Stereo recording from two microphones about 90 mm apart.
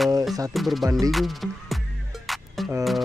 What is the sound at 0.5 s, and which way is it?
Speech, centre (ahead or behind).